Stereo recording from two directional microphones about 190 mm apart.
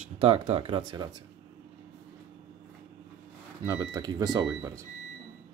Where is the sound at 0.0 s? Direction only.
35° right (ahead or behind).